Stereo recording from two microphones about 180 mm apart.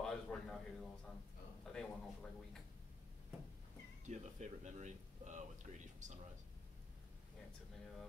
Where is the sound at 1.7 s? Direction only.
5° left (ahead or behind).